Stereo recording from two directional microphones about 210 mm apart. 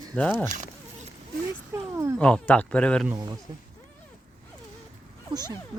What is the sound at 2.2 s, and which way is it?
Speech, 5° left (ahead or behind).